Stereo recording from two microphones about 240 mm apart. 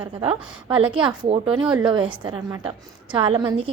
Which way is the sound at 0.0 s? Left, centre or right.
Right.